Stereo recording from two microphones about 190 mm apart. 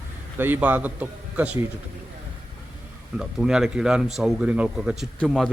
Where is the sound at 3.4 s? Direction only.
5° right (ahead or behind).